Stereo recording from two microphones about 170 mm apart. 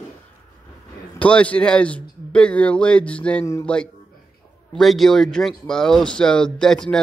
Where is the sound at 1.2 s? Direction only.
5° left (ahead or behind).